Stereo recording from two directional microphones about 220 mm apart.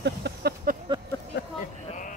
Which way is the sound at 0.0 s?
50° right (ahead or behind).